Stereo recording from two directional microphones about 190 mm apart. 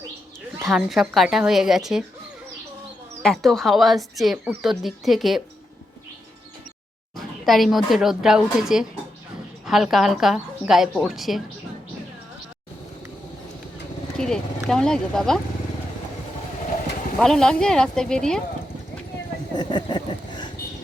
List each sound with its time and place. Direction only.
0.6 s speech: centre (ahead or behind)
3.2 s speech: centre (ahead or behind)
7.2 s speech: centre (ahead or behind)
14.2 s speech: 5° left (ahead or behind)
17.2 s speech: 5° left (ahead or behind)
19.5 s a sound: 25° left (ahead or behind)